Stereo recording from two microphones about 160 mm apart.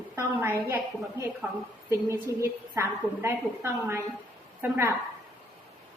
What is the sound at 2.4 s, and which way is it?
A woman's voice, 15° right (ahead or behind).